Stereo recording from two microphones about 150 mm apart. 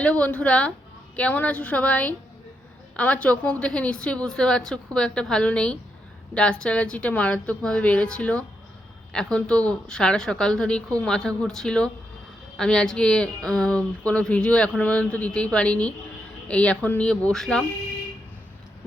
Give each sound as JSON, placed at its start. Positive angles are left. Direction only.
{"t": 0.0, "sound": "a woman's voice", "side_deg": 10}